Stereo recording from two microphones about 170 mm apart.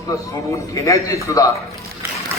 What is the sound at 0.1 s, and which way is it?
A man's voice, 20° left (ahead or behind).